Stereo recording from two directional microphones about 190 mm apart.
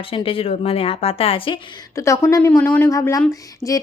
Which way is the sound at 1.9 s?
15° left (ahead or behind).